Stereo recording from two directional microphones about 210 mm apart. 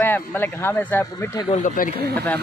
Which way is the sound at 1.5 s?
40° left (ahead or behind).